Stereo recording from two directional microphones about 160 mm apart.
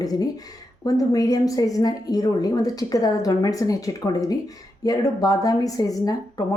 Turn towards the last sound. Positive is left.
turn(degrees=20)  # may be behind; listen again after turning